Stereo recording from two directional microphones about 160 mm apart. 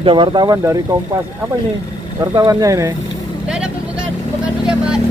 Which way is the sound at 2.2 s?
25° right (ahead or behind).